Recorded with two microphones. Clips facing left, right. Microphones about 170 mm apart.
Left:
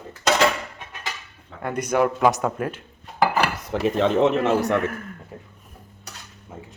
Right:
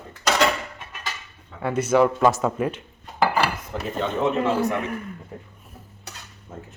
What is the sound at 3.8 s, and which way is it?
Speech, 85° left.